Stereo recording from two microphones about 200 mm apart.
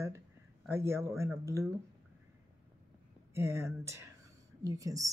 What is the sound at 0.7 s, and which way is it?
Speech, 15° right (ahead or behind).